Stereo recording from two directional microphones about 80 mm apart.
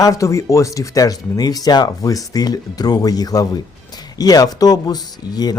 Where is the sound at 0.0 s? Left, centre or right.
Left.